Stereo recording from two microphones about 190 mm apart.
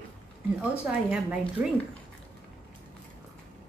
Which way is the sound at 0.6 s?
5° right (ahead or behind).